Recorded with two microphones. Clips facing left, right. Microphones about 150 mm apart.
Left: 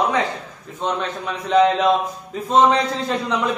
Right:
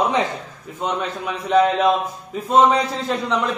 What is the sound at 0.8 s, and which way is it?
A man's voice, 5° right (ahead or behind).